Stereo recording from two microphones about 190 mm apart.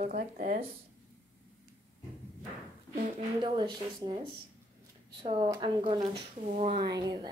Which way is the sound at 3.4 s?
25° right (ahead or behind).